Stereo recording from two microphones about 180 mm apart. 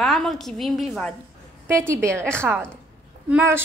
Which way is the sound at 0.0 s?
5° left (ahead or behind).